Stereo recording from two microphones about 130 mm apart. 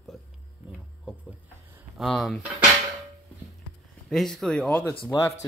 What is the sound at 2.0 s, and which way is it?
Speech, centre (ahead or behind).